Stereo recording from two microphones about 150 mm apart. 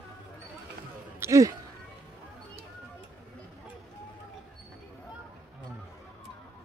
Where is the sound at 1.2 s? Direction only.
20° right (ahead or behind).